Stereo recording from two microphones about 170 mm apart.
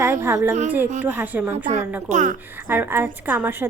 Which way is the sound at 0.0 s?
15° right (ahead or behind).